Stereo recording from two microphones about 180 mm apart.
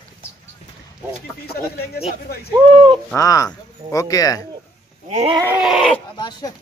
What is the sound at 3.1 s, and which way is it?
Speech, 20° left (ahead or behind).